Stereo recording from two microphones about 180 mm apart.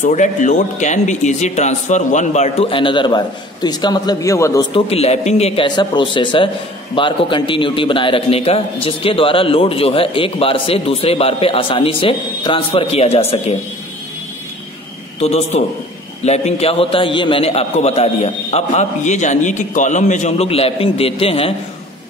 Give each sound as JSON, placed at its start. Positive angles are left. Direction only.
{"t": 0.0, "sound": "a man's voice", "side_deg": 45}
{"t": 4.7, "sound": "a man's voice", "side_deg": 35}
{"t": 15.1, "sound": "a man's voice", "side_deg": 35}